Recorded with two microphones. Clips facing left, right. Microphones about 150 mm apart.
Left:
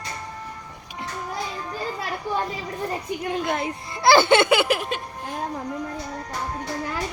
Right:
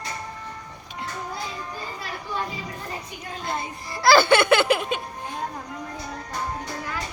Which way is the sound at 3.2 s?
75° left (ahead or behind).